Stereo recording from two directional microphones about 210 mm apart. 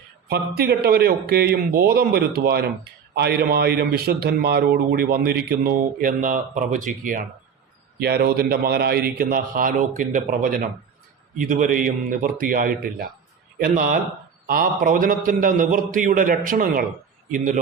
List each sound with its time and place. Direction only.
0.3 s a man's voice: 45° right (ahead or behind)